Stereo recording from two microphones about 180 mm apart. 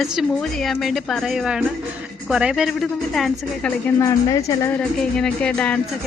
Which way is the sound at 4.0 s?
15° left (ahead or behind).